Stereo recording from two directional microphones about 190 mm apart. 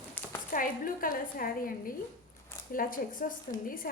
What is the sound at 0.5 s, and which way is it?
A woman's voice, 45° left (ahead or behind).